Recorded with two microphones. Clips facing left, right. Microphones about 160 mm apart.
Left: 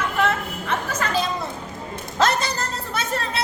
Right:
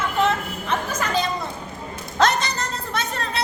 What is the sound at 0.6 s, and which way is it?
Music, 15° right (ahead or behind).